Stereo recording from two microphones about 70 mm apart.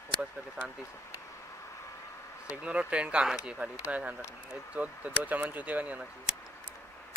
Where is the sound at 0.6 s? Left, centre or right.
Centre.